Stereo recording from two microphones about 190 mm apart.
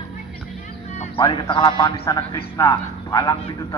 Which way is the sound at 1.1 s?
25° left (ahead or behind).